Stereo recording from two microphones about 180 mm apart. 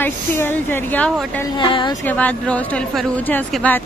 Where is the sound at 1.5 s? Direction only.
25° left (ahead or behind).